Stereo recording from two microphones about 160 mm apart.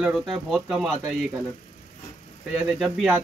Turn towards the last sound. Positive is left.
turn(degrees=-5)  # may be behind; listen again after turning